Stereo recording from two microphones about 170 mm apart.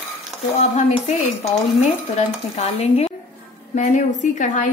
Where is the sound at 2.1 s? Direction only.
40° left (ahead or behind).